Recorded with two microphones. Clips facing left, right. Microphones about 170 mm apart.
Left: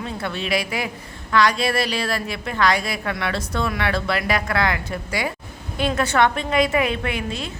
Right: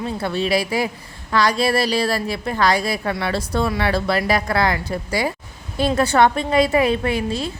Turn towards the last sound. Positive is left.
turn(degrees=-35)  # may be behind; listen again after turning